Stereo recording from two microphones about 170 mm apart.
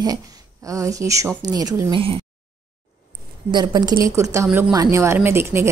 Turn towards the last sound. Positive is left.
turn(degrees=-15)  # may be behind; listen again after turning